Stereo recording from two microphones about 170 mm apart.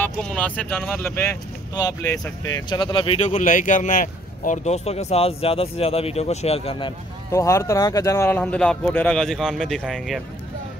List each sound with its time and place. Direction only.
0.0 s speech: 5° left (ahead or behind); by 6.9 s 35° left (ahead or behind)
7.2 s speech: 15° left (ahead or behind); by 10.2 s centre (ahead or behind)